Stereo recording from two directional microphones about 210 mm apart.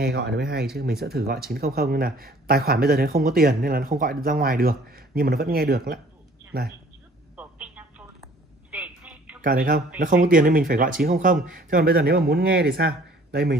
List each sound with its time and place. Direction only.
0.0 s speech: 50° right (ahead or behind)
7.3 s telephone: 5° right (ahead or behind)
9.4 s speech: 40° right (ahead or behind)